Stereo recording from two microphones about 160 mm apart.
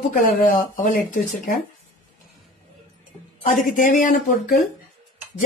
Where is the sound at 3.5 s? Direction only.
55° left (ahead or behind).